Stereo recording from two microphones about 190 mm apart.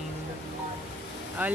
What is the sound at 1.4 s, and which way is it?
Speech, 10° right (ahead or behind).